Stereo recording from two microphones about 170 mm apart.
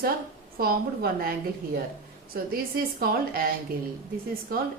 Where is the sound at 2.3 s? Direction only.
60° right (ahead or behind).